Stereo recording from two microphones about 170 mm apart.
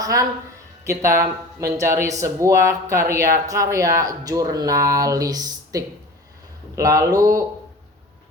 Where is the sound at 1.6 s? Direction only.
15° right (ahead or behind).